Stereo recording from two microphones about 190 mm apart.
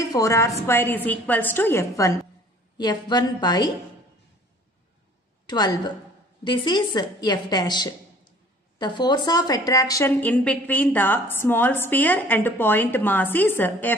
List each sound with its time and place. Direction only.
0.0 s a woman's voice: 15° left (ahead or behind)
5.5 s a woman's voice: 20° left (ahead or behind)